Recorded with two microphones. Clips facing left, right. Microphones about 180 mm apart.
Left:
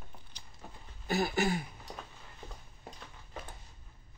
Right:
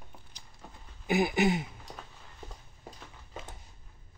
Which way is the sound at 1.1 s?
15° right (ahead or behind).